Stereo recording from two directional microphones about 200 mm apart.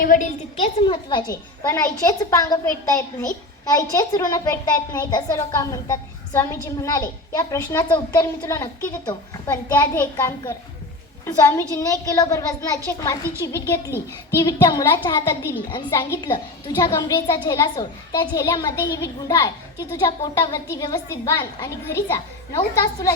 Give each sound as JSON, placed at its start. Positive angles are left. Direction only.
{"t": 0.0, "sound": "a woman's voice", "side_deg": 40}
{"t": 0.6, "sound": "a child's voice", "side_deg": 25}